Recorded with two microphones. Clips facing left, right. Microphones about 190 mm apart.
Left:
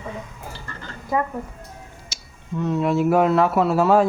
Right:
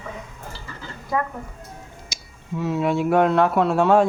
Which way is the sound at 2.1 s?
15° right (ahead or behind).